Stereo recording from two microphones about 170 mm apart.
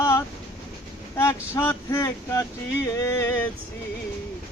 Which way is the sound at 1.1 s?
15° left (ahead or behind).